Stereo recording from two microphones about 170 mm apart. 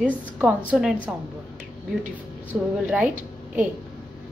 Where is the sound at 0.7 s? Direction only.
5° right (ahead or behind).